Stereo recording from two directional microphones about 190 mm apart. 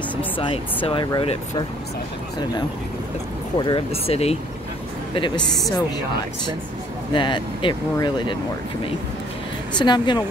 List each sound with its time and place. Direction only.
0.8 s speech: 25° left (ahead or behind)
3.5 s speech: 25° left (ahead or behind)
7.2 s speech: 25° left (ahead or behind)
9.8 s speech: 25° left (ahead or behind)